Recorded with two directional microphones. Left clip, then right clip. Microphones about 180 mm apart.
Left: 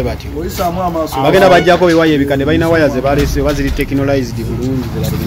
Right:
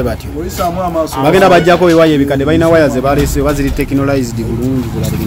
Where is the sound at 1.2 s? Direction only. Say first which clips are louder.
Even; 55° right (ahead or behind).